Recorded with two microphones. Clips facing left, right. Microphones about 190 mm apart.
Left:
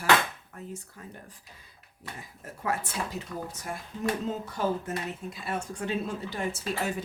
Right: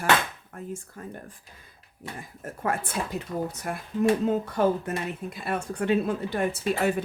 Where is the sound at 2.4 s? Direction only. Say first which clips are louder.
Right 3 dB; 50° right (ahead or behind).